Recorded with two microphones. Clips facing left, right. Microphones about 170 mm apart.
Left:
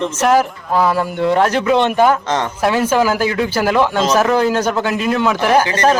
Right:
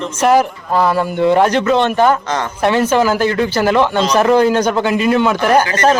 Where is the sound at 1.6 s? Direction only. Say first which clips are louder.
Even; 15° left (ahead or behind).